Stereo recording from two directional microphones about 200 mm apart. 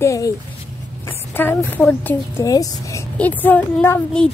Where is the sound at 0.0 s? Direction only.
15° left (ahead or behind).